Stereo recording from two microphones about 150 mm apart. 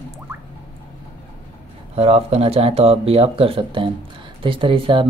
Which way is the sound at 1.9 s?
45° right (ahead or behind).